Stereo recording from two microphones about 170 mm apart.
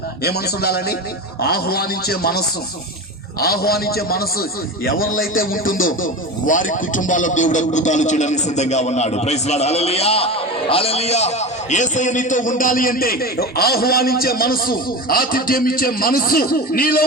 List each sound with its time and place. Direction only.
0.2 s a man's voice: 70° left (ahead or behind)
3.4 s a man's voice: 65° left (ahead or behind)